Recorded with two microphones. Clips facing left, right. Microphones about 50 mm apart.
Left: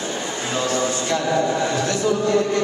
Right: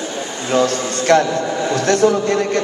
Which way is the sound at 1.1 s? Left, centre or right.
Right.